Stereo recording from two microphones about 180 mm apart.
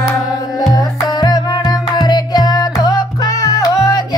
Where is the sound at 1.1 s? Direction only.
20° left (ahead or behind).